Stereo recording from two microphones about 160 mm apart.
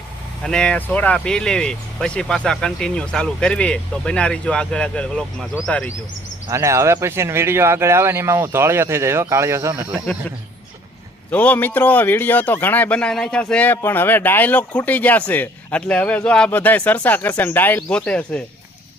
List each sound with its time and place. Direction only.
0.4 s speech: 5° left (ahead or behind)
6.5 s speech: 20° right (ahead or behind)
11.3 s speech: 10° left (ahead or behind)